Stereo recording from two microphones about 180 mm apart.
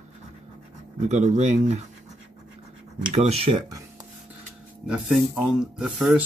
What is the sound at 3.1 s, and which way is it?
Speech, 35° right (ahead or behind).